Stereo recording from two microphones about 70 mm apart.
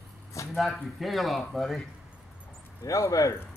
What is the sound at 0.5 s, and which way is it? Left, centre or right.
Speech, centre.